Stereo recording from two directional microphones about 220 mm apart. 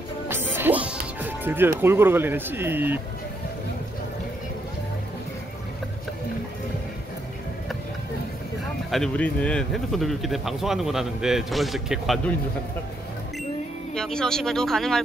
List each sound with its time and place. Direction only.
0.3 s music: 10° right (ahead or behind)
1.8 s speech: 10° right (ahead or behind)
8.9 s speech: 5° left (ahead or behind)
13.9 s speech: 5° left (ahead or behind)